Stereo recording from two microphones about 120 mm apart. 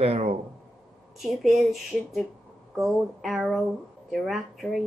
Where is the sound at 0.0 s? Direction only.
60° right (ahead or behind).